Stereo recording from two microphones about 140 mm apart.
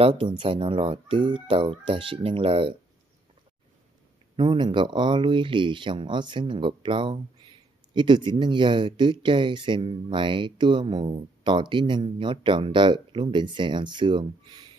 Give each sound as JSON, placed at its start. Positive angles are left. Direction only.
{"t": 0.0, "sound": "speech", "side_deg": -35}
{"t": 4.4, "sound": "speech", "side_deg": -35}